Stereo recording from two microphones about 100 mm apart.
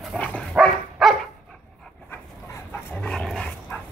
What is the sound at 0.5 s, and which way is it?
Dog, centre (ahead or behind).